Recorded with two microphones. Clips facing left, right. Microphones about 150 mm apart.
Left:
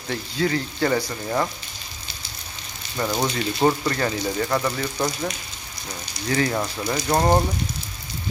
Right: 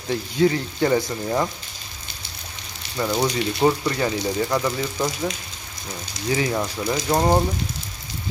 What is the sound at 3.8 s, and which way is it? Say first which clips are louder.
Speech: right 1 dB; 10° right (ahead or behind).